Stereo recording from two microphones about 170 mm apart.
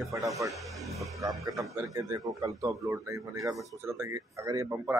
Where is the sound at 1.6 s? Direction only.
20° right (ahead or behind).